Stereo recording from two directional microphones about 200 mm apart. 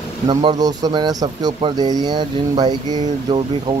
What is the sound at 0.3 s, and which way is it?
Speech, 25° right (ahead or behind).